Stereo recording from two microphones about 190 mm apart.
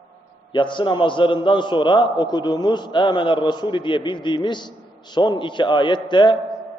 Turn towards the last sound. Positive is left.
turn(degrees=25)  # may be behind; listen again after turning